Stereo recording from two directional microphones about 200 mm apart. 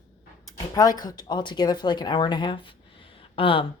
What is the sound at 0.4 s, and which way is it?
A woman's voice, 20° left (ahead or behind).